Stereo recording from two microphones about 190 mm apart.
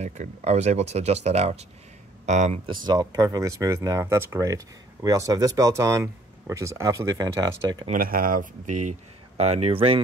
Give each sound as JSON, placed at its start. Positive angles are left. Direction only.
{"t": 0.0, "sound": "speech", "side_deg": -35}
{"t": 7.9, "sound": "speech", "side_deg": -50}